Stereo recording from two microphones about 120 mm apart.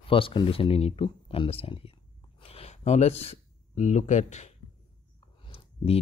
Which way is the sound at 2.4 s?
55° left (ahead or behind).